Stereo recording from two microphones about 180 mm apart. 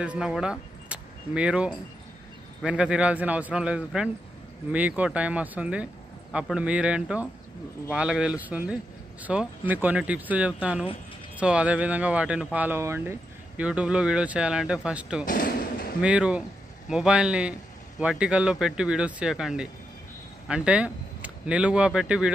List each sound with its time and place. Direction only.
0.0 s a man's voice: 5° right (ahead or behind)
15.2 s slam: 50° left (ahead or behind)
16.0 s a man's voice: 5° right (ahead or behind)